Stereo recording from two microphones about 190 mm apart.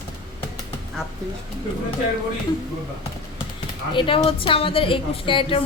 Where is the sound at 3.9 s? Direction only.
25° left (ahead or behind).